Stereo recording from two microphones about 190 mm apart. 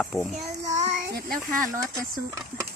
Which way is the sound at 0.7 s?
40° right (ahead or behind).